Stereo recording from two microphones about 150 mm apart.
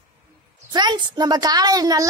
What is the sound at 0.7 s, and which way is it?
A woman's voice, 25° right (ahead or behind).